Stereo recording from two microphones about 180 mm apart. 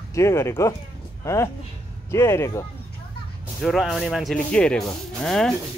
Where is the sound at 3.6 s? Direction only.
Centre (ahead or behind).